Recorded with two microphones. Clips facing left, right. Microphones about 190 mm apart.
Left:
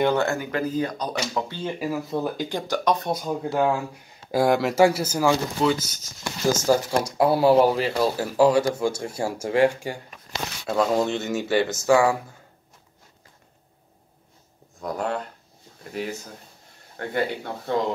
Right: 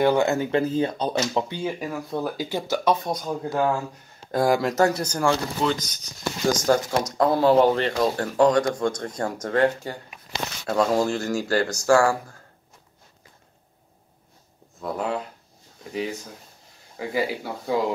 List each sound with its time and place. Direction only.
0.0 s speech: 15° right (ahead or behind)
1.3 s speech: 15° right (ahead or behind)
1.7 s speech: 5° left (ahead or behind)
3.1 s speech: 5° left (ahead or behind)
10.6 s speech: centre (ahead or behind)
14.8 s speech: centre (ahead or behind)